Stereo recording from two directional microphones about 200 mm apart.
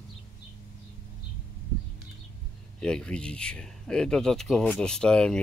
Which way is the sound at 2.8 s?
5° left (ahead or behind).